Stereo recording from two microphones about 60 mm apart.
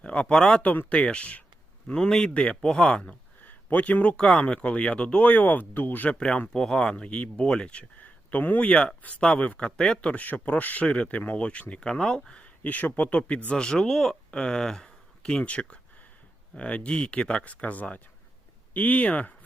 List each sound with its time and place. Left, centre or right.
0.0 s speech: centre
0.6 s a man's voice: left
3.4 s a sound: left
4.2 s speech: centre; by 6.1 s left
6.1 s a man's voice: centre
6.9 s a man's voice: left
12.6 s speech: left